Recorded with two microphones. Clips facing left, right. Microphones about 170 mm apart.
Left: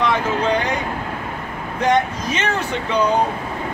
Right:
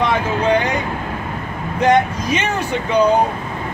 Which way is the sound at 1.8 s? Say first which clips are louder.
Right 3 dB; 10° right (ahead or behind).